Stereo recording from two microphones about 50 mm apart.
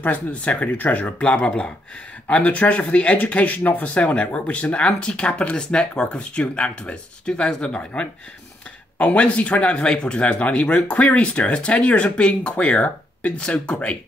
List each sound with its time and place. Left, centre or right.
0.0 s speech: left